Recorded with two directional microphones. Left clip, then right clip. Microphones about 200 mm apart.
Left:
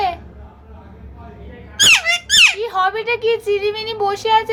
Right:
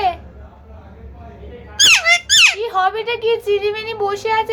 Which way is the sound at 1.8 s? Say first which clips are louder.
Right 1 dB; 20° right (ahead or behind).